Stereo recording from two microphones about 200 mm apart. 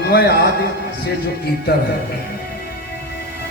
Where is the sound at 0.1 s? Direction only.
50° left (ahead or behind).